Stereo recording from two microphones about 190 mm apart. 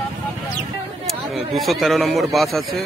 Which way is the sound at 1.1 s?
Centre (ahead or behind).